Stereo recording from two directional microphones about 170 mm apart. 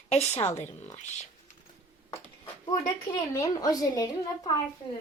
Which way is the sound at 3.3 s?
20° left (ahead or behind).